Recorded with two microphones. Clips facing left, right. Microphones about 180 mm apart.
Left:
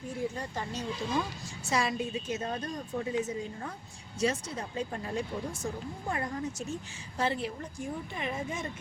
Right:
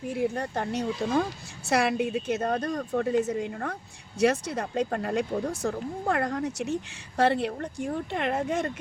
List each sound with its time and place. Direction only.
0.1 s a woman's voice: 65° right (ahead or behind)